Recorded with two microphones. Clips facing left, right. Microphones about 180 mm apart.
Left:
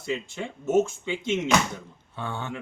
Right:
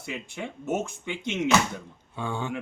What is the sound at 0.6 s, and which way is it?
Speech, 15° right (ahead or behind).